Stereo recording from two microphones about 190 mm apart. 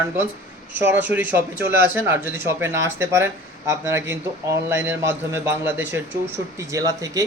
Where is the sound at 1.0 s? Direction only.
10° right (ahead or behind).